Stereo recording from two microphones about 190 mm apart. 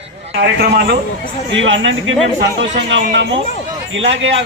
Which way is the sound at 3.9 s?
85° right.